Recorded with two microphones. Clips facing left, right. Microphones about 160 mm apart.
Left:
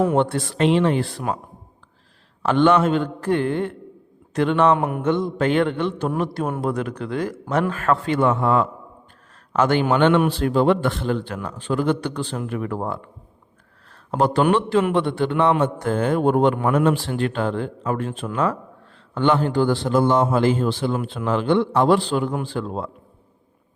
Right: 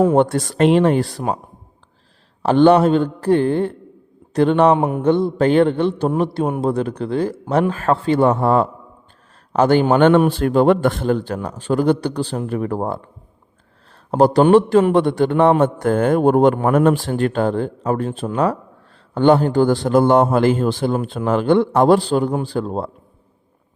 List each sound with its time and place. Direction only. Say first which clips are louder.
0.2 s a man's voice: right 4 dB; 45° right (ahead or behind)
2.4 s a man's voice: right 5 dB; 35° right (ahead or behind)
4.8 s mantra: right 4 dB; 20° right (ahead or behind)
5.0 s a man's voice: right 5 dB; 35° right (ahead or behind)